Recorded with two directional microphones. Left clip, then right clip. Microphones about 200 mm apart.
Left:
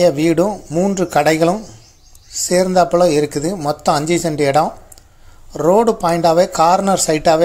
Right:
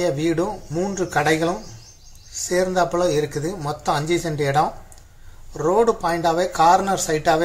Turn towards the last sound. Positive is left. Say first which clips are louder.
# left 6 dB
turn(degrees=40)  # may be behind; listen again after turning